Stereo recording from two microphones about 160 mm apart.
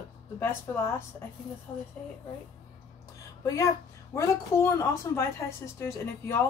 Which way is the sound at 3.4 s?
20° left (ahead or behind).